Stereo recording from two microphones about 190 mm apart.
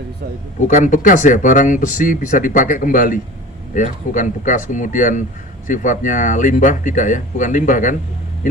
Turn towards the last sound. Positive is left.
turn(degrees=45)  # may be behind; listen again after turning